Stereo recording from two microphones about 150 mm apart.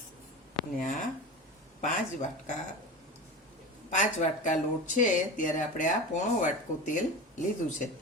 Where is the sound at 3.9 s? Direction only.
60° left (ahead or behind).